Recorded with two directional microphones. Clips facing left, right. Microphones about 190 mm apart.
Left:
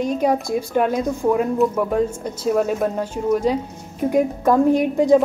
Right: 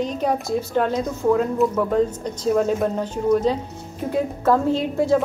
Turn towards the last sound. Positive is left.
turn(degrees=15)  # may be behind; listen again after turning